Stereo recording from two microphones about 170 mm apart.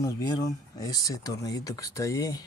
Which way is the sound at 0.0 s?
20° left (ahead or behind).